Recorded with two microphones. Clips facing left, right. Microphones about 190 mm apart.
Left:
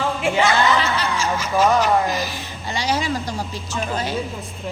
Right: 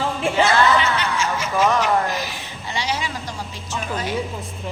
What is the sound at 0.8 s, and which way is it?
Speech, 35° left (ahead or behind).